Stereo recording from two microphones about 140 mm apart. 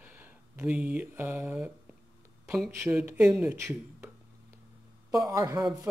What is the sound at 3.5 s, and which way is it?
A man's voice, 20° right (ahead or behind).